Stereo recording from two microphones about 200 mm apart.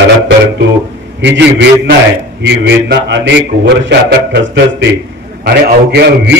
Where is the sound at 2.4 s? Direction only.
60° right (ahead or behind).